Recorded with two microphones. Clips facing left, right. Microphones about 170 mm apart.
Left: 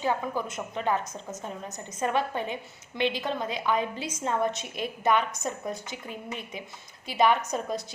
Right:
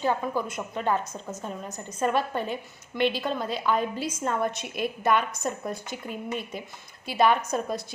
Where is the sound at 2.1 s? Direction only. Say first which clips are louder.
Right 1 dB; 20° left (ahead or behind).